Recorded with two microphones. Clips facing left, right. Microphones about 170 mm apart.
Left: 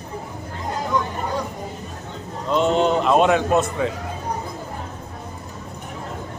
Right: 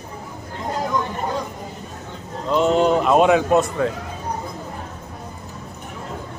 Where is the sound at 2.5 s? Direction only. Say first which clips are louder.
Right 2 dB; 5° right (ahead or behind).